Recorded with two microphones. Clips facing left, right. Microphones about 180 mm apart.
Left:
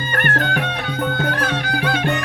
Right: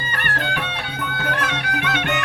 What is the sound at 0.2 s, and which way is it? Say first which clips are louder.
Music: left 5 dB; 50° left (ahead or behind).